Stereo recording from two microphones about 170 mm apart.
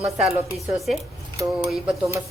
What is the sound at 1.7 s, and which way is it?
Speech, centre (ahead or behind).